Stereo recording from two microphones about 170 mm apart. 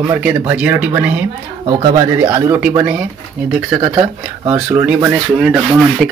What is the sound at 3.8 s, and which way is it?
Speech, 35° right (ahead or behind).